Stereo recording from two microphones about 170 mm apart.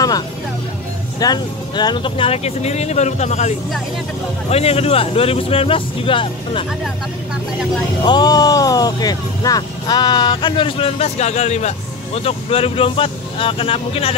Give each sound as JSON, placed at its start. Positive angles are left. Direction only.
{"t": 1.2, "sound": "speech", "side_deg": 25}
{"t": 8.0, "sound": "speech", "side_deg": 25}